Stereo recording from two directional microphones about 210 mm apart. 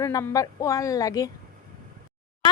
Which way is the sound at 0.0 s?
15° left (ahead or behind).